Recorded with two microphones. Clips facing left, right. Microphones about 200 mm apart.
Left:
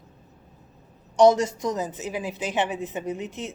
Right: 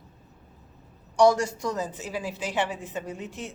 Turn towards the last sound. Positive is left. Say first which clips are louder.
# left 5 dB
turn(degrees=20)  # may be behind; listen again after turning